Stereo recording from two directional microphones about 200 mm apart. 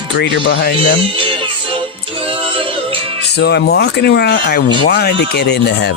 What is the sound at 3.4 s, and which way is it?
Speech, 55° left (ahead or behind).